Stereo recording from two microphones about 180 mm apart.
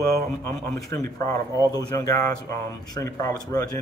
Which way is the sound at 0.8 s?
20° left (ahead or behind).